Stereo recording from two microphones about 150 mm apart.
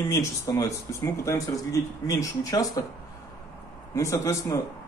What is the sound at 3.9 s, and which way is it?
Speech, 20° left (ahead or behind).